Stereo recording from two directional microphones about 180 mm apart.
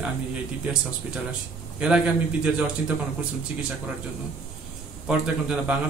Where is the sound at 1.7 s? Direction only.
5° right (ahead or behind).